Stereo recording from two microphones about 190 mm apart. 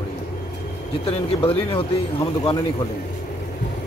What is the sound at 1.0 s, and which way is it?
Speech, 30° left (ahead or behind).